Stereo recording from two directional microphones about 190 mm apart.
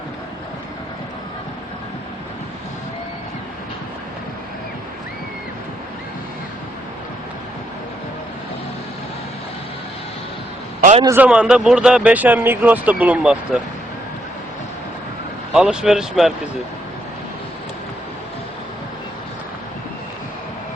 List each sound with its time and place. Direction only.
10.8 s a sound: 40° right (ahead or behind)
11.0 s speech: 10° right (ahead or behind)
15.5 s speech: 5° right (ahead or behind)